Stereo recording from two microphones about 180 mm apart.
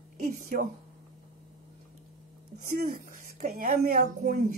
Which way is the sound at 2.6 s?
50° right (ahead or behind).